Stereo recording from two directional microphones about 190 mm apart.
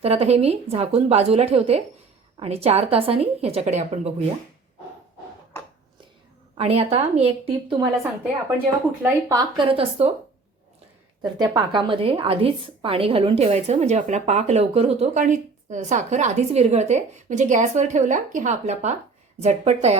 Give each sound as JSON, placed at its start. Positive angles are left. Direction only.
{"t": 0.0, "sound": "a woman's voice", "side_deg": -30}
{"t": 6.6, "sound": "a woman's voice", "side_deg": -30}
{"t": 9.0, "sound": "speech", "side_deg": -20}
{"t": 11.2, "sound": "a woman's voice", "side_deg": -20}